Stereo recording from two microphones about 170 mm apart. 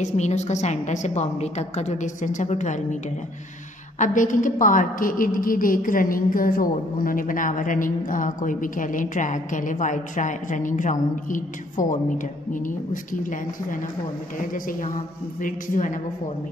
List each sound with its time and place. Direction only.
0.0 s a woman's voice: 40° left (ahead or behind)
4.0 s a woman's voice: 50° left (ahead or behind)